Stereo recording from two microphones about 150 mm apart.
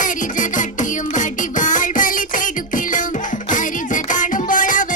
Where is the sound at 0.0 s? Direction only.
60° left (ahead or behind).